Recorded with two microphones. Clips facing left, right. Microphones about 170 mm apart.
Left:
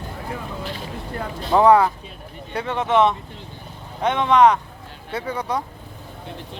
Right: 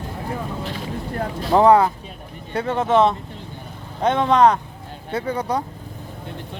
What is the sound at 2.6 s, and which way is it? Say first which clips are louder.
Speech: right 1 dB; 40° right (ahead or behind).